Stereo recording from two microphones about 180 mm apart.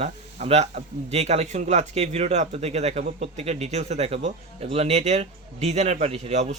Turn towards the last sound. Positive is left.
turn(degrees=-40)  # may be behind; listen again after turning